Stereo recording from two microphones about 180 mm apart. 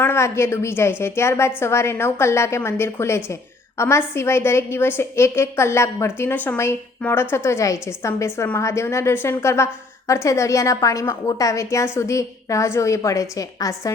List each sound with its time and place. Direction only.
0.0 s a woman's voice: 15° left (ahead or behind)